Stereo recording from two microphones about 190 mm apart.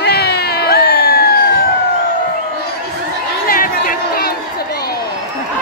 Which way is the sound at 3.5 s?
50° left (ahead or behind).